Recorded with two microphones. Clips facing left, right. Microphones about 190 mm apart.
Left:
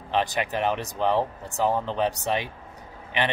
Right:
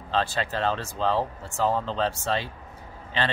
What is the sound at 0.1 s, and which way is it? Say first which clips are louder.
Speech: left 1 dB; 15° left (ahead or behind).